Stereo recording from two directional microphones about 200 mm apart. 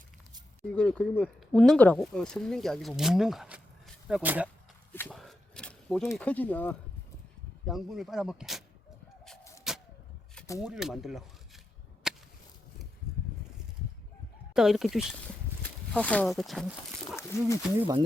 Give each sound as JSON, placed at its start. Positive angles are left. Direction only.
{"t": 0.8, "sound": "speech", "side_deg": 5}
{"t": 4.9, "sound": "speech", "side_deg": 5}
{"t": 9.7, "sound": "vehicle", "side_deg": 0}
{"t": 10.6, "sound": "speech", "side_deg": -5}
{"t": 12.0, "sound": "whip", "side_deg": 0}
{"t": 14.5, "sound": "speech", "side_deg": 0}
{"t": 17.3, "sound": "speech", "side_deg": 15}
{"t": 17.7, "sound": "speech", "side_deg": -20}